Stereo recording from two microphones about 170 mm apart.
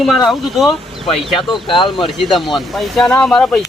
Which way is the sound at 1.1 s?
30° left (ahead or behind).